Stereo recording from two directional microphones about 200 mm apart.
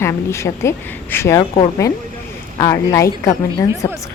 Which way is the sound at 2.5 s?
15° left (ahead or behind).